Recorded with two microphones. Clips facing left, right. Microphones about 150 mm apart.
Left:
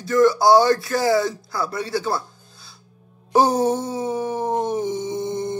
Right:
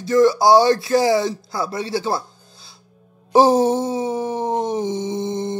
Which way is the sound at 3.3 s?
25° right (ahead or behind).